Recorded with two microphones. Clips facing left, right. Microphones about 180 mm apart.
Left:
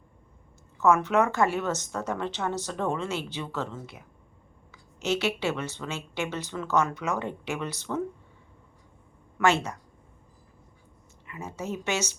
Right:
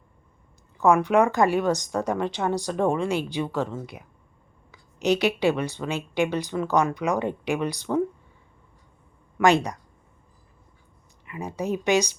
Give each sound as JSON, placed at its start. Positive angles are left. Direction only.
{"t": 0.9, "sound": "speech", "side_deg": -15}
{"t": 9.4, "sound": "speech", "side_deg": -15}
{"t": 11.3, "sound": "speech", "side_deg": -15}